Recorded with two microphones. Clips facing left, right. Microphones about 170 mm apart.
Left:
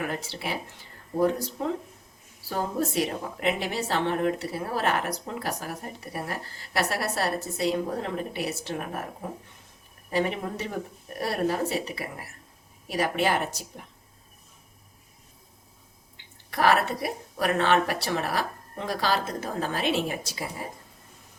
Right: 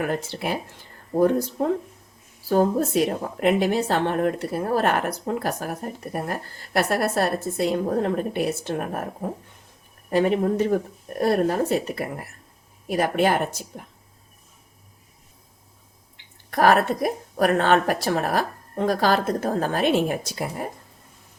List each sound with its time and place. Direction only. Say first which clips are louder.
0.1 s speech: right 6 dB; 50° right (ahead or behind)
10.1 s speech: right 7 dB; 50° right (ahead or behind)
16.5 s speech: right 5 dB; 50° right (ahead or behind)